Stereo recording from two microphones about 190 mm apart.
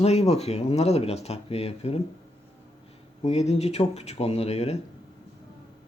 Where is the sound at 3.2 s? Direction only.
35° left (ahead or behind).